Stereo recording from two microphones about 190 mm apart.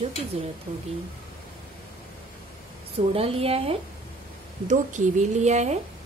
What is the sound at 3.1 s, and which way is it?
A woman's voice, 30° right (ahead or behind).